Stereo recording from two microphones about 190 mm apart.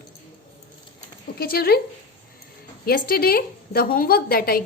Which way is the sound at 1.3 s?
50° left (ahead or behind).